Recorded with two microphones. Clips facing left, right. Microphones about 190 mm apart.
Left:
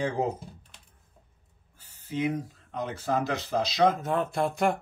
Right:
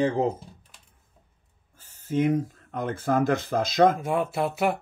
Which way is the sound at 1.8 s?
45° right (ahead or behind).